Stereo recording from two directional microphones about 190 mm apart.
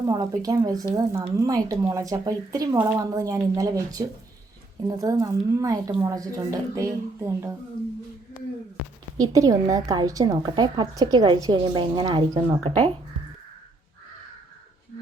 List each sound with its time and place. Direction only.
0.1 s a woman's voice: 20° right (ahead or behind)
9.3 s a woman's voice: 20° right (ahead or behind)